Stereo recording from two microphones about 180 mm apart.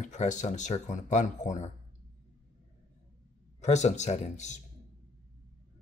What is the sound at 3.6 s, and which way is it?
Speech, 40° left (ahead or behind).